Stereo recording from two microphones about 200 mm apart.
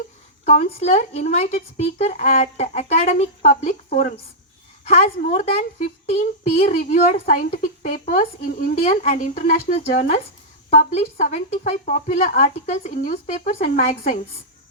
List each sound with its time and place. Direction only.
0.4 s a child's voice: 35° left (ahead or behind)